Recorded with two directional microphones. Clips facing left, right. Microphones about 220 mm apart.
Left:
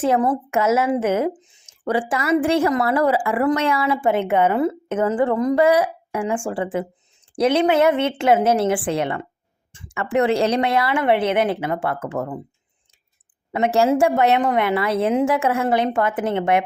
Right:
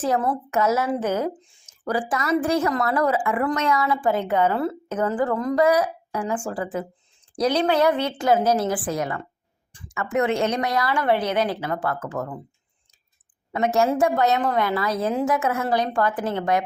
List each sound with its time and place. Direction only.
0.0 s a woman's voice: 20° left (ahead or behind)
13.5 s a woman's voice: 30° left (ahead or behind)